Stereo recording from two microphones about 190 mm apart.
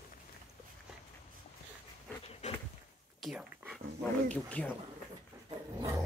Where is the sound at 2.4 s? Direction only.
40° left (ahead or behind).